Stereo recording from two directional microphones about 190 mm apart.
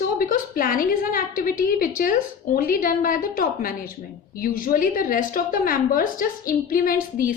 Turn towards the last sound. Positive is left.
turn(degrees=50)  # may be behind; listen again after turning